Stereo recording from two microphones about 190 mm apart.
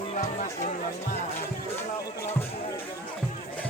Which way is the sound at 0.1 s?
35° left (ahead or behind).